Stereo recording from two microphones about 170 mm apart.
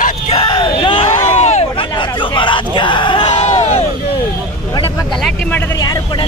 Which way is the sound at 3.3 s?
40° left (ahead or behind).